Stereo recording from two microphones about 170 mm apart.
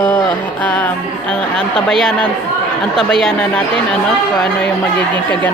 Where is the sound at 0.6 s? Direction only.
10° left (ahead or behind).